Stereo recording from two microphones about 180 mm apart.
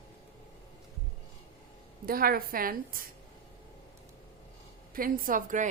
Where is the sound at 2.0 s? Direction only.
55° right (ahead or behind).